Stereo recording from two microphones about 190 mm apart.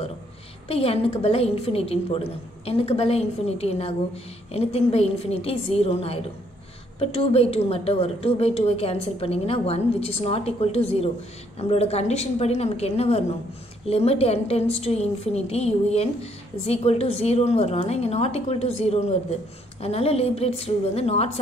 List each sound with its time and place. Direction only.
0.7 s a woman's voice: 30° left (ahead or behind)